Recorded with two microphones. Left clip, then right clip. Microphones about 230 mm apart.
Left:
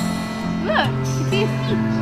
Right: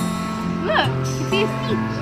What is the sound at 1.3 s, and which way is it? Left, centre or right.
Speech, centre.